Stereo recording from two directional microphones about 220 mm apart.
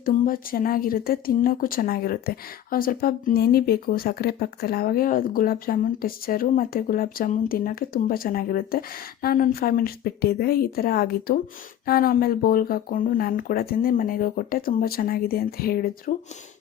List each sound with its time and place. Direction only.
0.0 s a woman's voice: 40° left (ahead or behind)